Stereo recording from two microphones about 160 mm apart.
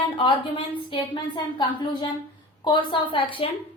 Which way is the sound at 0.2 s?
30° left (ahead or behind).